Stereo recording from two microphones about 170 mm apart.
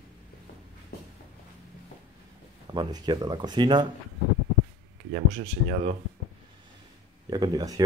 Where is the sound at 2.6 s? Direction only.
25° right (ahead or behind).